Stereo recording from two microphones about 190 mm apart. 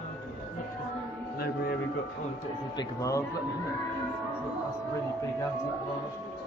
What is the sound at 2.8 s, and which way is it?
Speech, 15° left (ahead or behind).